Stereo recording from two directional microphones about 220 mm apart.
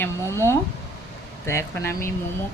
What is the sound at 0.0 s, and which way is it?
Speech, 10° left (ahead or behind).